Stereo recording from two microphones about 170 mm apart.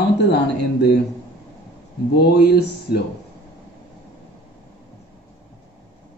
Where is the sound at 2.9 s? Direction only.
65° left (ahead or behind).